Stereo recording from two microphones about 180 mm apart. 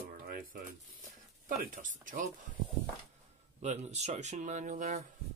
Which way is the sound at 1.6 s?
50° right (ahead or behind).